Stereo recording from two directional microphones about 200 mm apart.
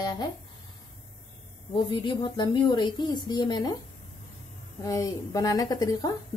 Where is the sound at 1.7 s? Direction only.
25° left (ahead or behind).